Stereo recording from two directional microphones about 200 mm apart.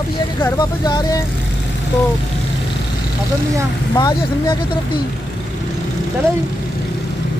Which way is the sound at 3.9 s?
20° left (ahead or behind).